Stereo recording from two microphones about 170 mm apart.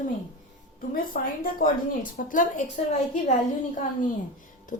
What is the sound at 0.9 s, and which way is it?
A woman's voice, 55° left (ahead or behind).